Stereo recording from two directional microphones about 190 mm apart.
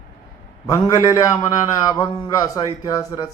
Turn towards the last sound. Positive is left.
turn(degrees=20)  # may be behind; listen again after turning